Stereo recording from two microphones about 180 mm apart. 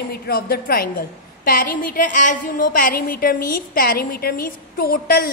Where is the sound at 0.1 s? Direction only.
55° left (ahead or behind).